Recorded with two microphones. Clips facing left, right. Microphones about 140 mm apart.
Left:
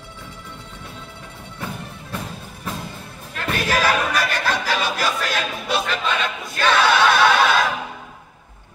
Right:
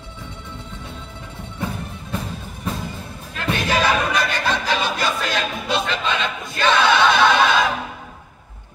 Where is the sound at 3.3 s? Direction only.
Centre (ahead or behind).